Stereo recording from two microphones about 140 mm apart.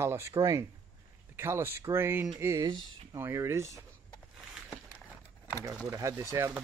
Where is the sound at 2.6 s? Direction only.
30° right (ahead or behind).